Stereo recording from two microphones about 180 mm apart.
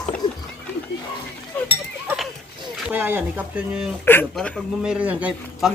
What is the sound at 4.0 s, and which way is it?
Speech, 10° left (ahead or behind).